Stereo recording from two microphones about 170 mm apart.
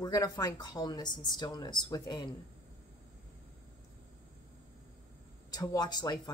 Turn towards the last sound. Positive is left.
turn(degrees=25)  # may be behind; listen again after turning